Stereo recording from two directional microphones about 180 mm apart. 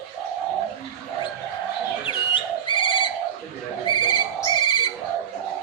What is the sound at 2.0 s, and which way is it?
Bird, 25° left (ahead or behind).